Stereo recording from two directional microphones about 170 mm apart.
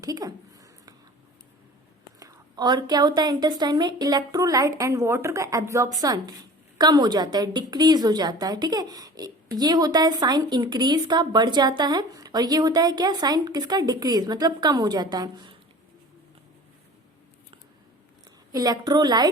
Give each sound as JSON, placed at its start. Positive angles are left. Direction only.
{"t": 0.0, "sound": "a sound", "side_deg": -20}
{"t": 2.1, "sound": "a woman's voice", "side_deg": -20}
{"t": 18.5, "sound": "a woman's voice", "side_deg": -20}